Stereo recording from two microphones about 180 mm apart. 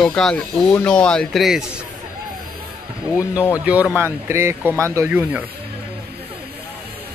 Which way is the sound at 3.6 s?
5° right (ahead or behind).